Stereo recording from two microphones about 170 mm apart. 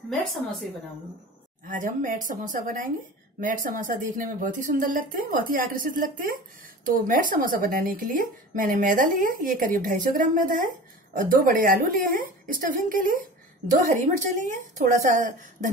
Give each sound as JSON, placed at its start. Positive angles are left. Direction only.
{"t": 1.7, "sound": "speech", "side_deg": -50}